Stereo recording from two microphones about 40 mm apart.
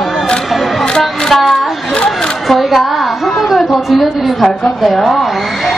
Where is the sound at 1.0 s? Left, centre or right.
Centre.